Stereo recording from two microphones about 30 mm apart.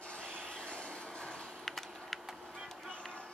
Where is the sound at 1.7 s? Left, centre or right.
Centre.